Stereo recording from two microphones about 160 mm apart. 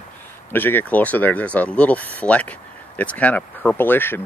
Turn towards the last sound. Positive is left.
turn(degrees=15)  # may be behind; listen again after turning